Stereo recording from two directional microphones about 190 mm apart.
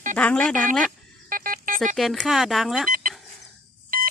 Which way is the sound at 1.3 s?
45° right (ahead or behind).